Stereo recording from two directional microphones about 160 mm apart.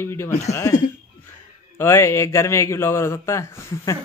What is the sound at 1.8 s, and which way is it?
Speech, 15° left (ahead or behind).